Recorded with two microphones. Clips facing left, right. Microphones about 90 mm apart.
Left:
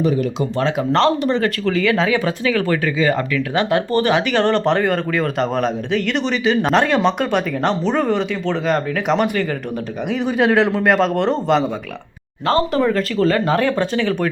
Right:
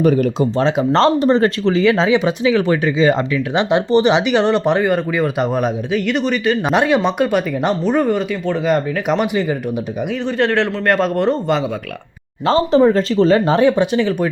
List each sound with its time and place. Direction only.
0.0 s speech: 50° right (ahead or behind)
0.5 s speech: 30° right (ahead or behind); by 9.6 s 15° right (ahead or behind)
10.1 s a man's voice: 5° left (ahead or behind)
12.5 s speech: 25° right (ahead or behind)
13.9 s a man's voice: 5° right (ahead or behind)